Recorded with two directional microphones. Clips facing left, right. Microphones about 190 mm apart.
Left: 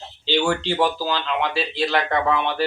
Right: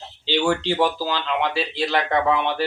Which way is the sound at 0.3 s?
10° right (ahead or behind).